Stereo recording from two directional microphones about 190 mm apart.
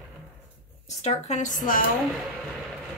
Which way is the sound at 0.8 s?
35° left (ahead or behind).